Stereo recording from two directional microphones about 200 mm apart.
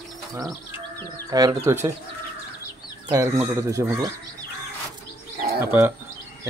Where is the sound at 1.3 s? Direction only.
20° right (ahead or behind).